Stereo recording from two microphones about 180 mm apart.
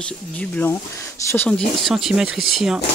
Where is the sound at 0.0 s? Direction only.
10° left (ahead or behind).